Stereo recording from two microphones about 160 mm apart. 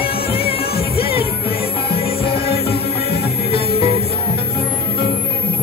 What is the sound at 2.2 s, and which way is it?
Music, 35° left (ahead or behind).